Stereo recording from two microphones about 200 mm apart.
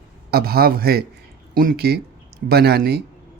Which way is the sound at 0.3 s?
50° right (ahead or behind).